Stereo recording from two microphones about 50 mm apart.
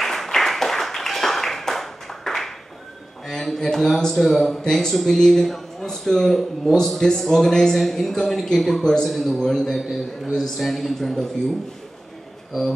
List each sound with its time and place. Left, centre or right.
0.0 s clapping: centre
3.3 s a man's voice: centre